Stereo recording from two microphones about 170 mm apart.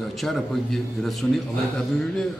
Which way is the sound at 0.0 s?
Centre (ahead or behind).